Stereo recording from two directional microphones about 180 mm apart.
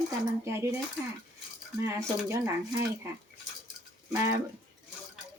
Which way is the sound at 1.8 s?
15° right (ahead or behind).